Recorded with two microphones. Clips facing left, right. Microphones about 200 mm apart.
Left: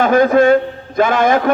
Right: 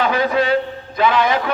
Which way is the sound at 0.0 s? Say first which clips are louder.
Left 7 dB; 50° left (ahead or behind).